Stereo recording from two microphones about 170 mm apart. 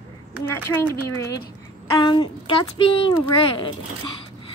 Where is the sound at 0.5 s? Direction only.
15° left (ahead or behind).